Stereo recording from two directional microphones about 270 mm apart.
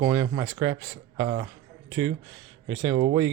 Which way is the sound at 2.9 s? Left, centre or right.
Centre.